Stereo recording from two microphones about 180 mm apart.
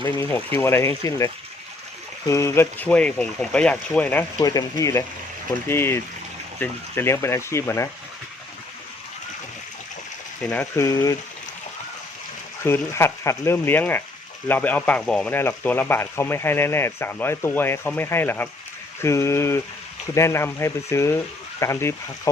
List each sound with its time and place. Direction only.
0.0 s speech: 15° left (ahead or behind)
4.4 s speech: 20° left (ahead or behind)
10.4 s speech: 5° left (ahead or behind)
10.8 s speech: 20° left (ahead or behind)
12.6 s speech: 15° left (ahead or behind)